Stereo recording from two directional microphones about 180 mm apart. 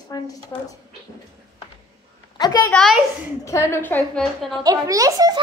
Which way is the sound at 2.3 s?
25° left (ahead or behind).